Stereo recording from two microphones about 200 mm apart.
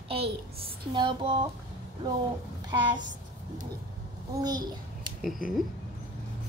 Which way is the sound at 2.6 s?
20° right (ahead or behind).